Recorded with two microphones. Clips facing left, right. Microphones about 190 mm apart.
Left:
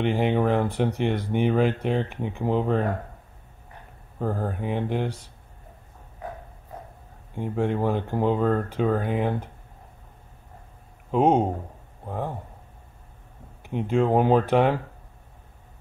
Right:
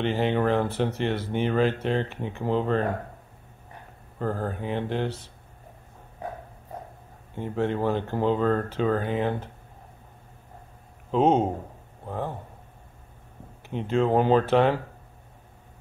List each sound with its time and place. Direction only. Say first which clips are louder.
0.0 s speech: left 1 dB; 15° left (ahead or behind)
4.2 s speech: left 1 dB; 10° left (ahead or behind)
7.3 s speech: left 1 dB; 10° left (ahead or behind)
11.1 s speech: left 1 dB; 10° left (ahead or behind)
13.6 s speech: left 1 dB; 15° left (ahead or behind)